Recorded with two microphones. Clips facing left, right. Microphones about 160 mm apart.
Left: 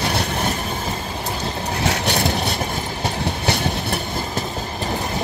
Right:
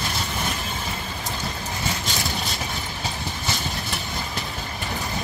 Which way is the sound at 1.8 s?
70° left (ahead or behind).